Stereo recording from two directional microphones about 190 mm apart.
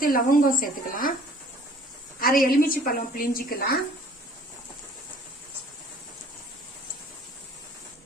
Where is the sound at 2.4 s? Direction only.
50° left (ahead or behind).